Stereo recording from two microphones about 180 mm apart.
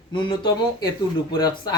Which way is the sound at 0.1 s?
25° left (ahead or behind).